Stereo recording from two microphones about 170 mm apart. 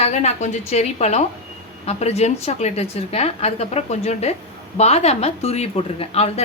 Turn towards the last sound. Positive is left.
turn(degrees=40)  # may be behind; listen again after turning